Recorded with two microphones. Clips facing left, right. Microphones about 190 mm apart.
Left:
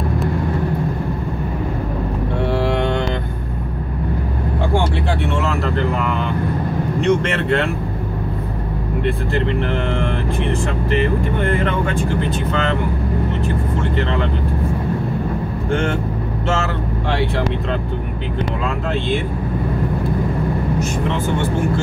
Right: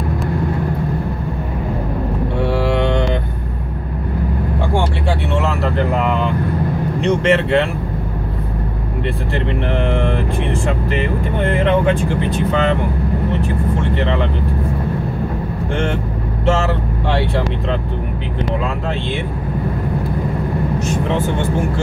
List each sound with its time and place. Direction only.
7.0 s speech: 50° left (ahead or behind)